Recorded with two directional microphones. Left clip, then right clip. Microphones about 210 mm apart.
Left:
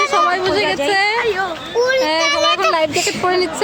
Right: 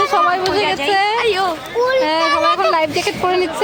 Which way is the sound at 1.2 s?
50° right (ahead or behind).